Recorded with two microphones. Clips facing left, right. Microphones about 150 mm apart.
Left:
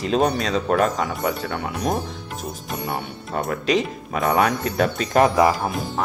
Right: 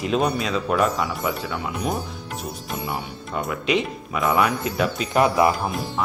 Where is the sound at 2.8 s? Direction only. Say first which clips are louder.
Left 1 dB; 50° left (ahead or behind).